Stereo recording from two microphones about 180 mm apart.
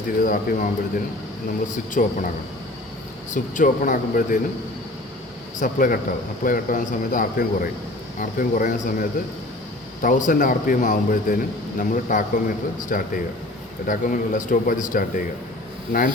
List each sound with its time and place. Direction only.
0.2 s a man's voice: 50° left (ahead or behind)
1.9 s a man's voice: 50° left (ahead or behind)
3.3 s a man's voice: 45° left (ahead or behind)
5.5 s a man's voice: 50° left (ahead or behind)